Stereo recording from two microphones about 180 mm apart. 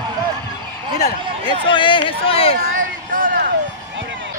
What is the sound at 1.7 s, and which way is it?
Speech, 30° left (ahead or behind).